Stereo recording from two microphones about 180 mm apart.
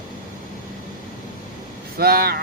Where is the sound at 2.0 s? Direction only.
60° right (ahead or behind).